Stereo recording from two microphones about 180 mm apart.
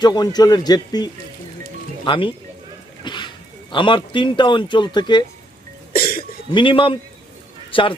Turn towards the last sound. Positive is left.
turn(degrees=30)  # may be behind; listen again after turning